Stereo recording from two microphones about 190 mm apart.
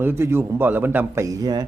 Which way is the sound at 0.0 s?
15° right (ahead or behind).